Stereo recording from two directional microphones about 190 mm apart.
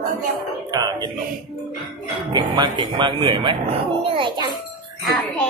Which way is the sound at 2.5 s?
25° right (ahead or behind).